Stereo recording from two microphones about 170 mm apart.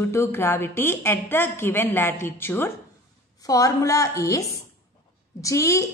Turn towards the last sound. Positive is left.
turn(degrees=20)  # may be behind; listen again after turning